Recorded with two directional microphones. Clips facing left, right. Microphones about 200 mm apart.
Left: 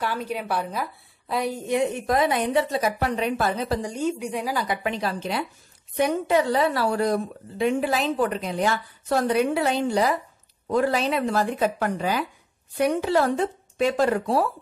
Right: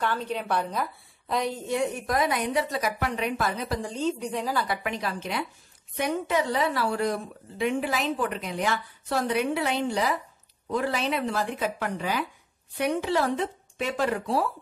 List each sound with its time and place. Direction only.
0.0 s a woman's voice: 10° left (ahead or behind); by 3.7 s 30° left (ahead or behind)
3.8 s a woman's voice: 10° left (ahead or behind)
4.6 s a woman's voice: 30° left (ahead or behind)